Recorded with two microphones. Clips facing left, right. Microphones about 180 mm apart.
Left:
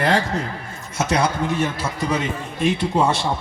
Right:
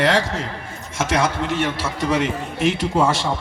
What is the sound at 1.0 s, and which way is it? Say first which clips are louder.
A man's voice: even; 90° right.